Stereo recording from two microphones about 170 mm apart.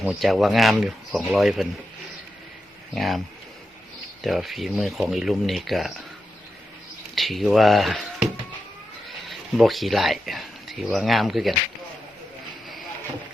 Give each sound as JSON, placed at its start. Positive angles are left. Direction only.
{"t": 0.0, "sound": "speech", "side_deg": 0}
{"t": 2.9, "sound": "speech", "side_deg": 0}
{"t": 4.2, "sound": "speech", "side_deg": 0}
{"t": 7.2, "sound": "speech", "side_deg": 0}